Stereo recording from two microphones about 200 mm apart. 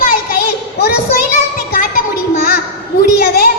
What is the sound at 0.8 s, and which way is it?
Child singing, 50° left (ahead or behind).